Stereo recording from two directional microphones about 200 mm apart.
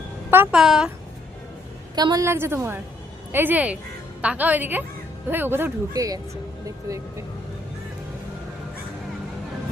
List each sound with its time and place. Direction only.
0.3 s speech: 5° right (ahead or behind)
2.0 s speech: 20° right (ahead or behind)